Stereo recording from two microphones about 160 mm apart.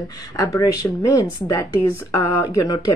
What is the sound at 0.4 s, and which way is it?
Speech, 20° left (ahead or behind).